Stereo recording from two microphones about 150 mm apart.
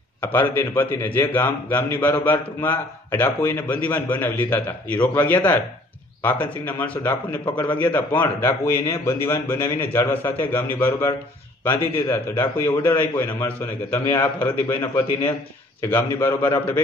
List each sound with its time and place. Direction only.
0.2 s a man's voice: 15° left (ahead or behind)